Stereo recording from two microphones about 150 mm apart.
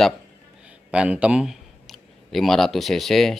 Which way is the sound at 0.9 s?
5° right (ahead or behind).